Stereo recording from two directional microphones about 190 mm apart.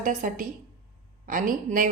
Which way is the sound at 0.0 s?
45° right (ahead or behind).